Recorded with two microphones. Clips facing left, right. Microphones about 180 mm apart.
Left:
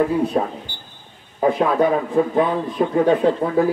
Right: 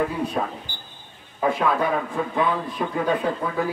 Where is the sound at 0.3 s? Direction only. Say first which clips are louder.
Left 5 dB; 35° left (ahead or behind).